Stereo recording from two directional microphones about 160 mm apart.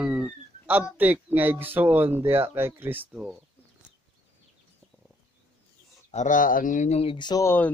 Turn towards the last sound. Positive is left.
turn(degrees=25)  # may be behind; listen again after turning